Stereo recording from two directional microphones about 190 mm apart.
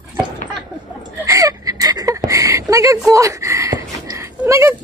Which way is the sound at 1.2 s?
15° right (ahead or behind).